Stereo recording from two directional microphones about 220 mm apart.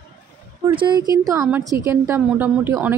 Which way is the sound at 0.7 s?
20° right (ahead or behind).